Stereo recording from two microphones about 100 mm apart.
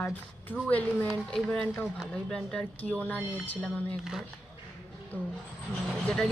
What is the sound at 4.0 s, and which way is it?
Speech, 5° right (ahead or behind).